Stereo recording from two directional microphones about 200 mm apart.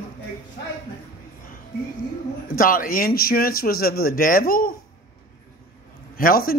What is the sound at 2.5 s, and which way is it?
Speech, 45° left (ahead or behind).